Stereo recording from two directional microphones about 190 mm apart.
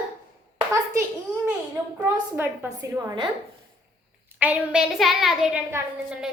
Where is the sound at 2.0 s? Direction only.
10° right (ahead or behind).